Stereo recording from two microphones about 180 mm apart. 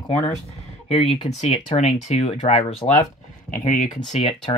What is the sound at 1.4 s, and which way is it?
Speech, 35° left (ahead or behind).